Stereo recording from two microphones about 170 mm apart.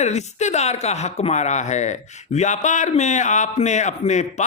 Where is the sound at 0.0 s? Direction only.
45° left (ahead or behind).